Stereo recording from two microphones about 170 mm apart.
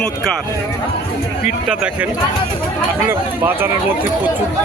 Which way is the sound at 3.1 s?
10° right (ahead or behind).